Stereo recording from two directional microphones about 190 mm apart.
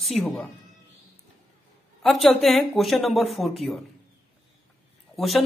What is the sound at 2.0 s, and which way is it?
A man's voice, centre (ahead or behind).